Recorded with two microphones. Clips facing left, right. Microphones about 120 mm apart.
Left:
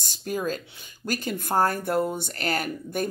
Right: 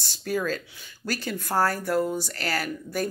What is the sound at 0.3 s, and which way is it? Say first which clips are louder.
Speech: right 1 dB; 15° left (ahead or behind).